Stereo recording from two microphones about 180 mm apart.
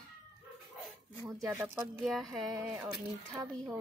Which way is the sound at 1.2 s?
20° right (ahead or behind).